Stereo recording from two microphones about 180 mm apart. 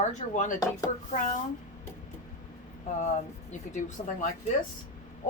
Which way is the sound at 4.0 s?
35° left (ahead or behind).